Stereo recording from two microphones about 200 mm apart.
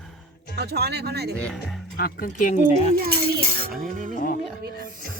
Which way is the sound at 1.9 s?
45° left (ahead or behind).